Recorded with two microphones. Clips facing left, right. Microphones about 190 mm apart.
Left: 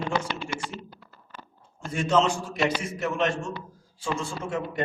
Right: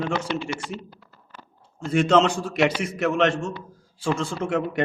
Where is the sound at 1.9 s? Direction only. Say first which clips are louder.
Right 5 dB; 70° right (ahead or behind).